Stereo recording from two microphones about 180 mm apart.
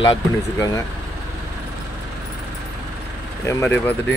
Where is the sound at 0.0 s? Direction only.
25° left (ahead or behind).